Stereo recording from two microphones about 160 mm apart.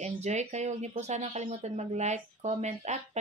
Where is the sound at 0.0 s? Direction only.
45° right (ahead or behind).